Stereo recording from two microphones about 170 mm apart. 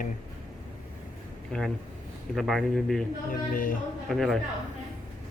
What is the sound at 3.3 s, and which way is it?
Speech, 55° left (ahead or behind).